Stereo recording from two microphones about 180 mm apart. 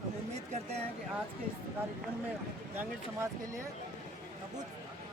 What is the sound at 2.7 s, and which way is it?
Speech, 15° right (ahead or behind).